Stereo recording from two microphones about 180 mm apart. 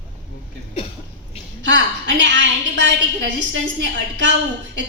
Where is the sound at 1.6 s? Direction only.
85° right.